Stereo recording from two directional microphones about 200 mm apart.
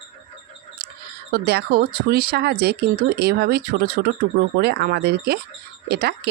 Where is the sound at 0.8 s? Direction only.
50° right (ahead or behind).